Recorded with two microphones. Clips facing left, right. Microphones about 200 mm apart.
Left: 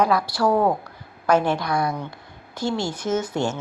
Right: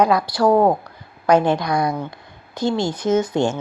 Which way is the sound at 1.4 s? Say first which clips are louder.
Right 4 dB; 20° right (ahead or behind).